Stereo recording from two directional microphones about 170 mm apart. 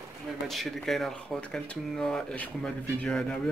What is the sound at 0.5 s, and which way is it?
Speech, centre (ahead or behind).